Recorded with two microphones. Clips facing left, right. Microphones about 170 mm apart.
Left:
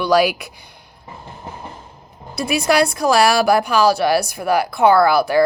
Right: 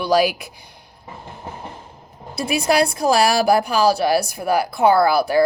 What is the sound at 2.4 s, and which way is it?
Speech, 30° right (ahead or behind).